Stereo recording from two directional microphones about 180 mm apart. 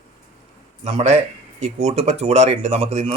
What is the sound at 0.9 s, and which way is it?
Speech, 35° right (ahead or behind).